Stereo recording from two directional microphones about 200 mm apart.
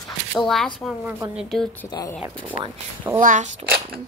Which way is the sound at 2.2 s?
10° right (ahead or behind).